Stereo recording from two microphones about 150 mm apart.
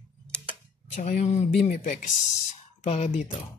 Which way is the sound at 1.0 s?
55° left (ahead or behind).